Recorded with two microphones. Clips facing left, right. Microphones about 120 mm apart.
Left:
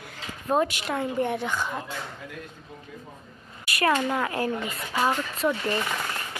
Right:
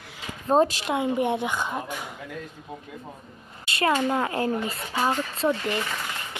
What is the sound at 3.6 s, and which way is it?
Speech, 25° right (ahead or behind).